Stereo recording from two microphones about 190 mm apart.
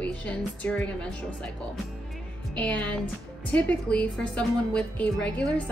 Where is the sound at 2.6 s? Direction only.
5° left (ahead or behind).